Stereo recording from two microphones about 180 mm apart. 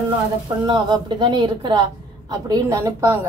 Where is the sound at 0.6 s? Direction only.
25° right (ahead or behind).